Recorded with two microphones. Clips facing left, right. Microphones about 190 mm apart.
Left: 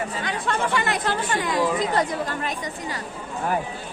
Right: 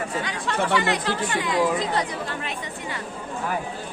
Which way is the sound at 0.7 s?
50° left (ahead or behind).